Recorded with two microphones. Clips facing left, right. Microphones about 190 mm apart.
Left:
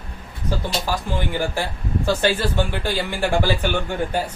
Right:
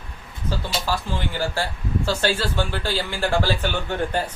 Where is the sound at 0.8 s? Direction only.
15° left (ahead or behind).